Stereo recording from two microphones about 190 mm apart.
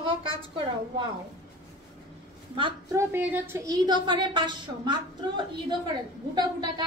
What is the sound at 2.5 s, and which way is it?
Speech, 25° right (ahead or behind).